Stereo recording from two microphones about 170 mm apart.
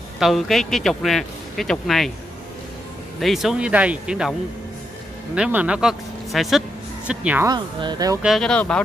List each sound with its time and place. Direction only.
0.2 s speech: centre (ahead or behind)
3.2 s speech: centre (ahead or behind)
5.3 s speech: 5° right (ahead or behind)
7.4 s speech: 25° right (ahead or behind)
8.2 s speech: centre (ahead or behind)